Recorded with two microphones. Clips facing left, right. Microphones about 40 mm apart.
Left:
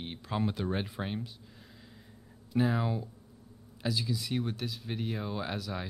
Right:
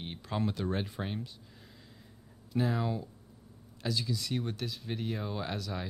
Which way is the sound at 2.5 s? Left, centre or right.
Centre.